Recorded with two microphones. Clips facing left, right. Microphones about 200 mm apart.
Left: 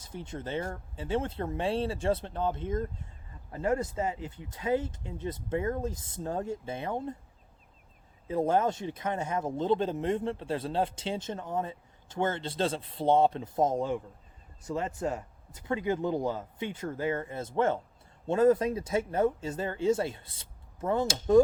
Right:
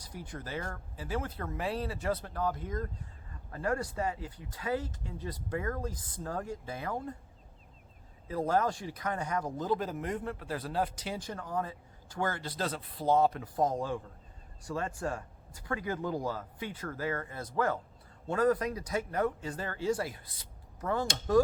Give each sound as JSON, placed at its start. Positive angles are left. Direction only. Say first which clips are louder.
{"t": 0.0, "sound": "speech", "louder": "left 4 dB", "side_deg": 25}
{"t": 8.3, "sound": "speech", "louder": "left 3 dB", "side_deg": 25}
{"t": 21.4, "sound": "hammer", "louder": "left 5 dB", "side_deg": 25}